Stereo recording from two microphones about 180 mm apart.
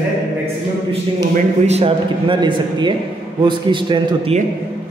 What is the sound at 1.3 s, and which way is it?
A man's voice, 35° right (ahead or behind).